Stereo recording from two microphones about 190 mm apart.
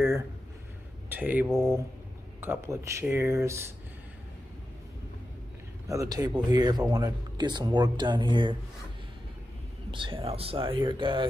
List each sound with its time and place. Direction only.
1.0 s speech: 10° right (ahead or behind)
5.9 s speech: 20° right (ahead or behind)
9.8 s speech: 25° right (ahead or behind)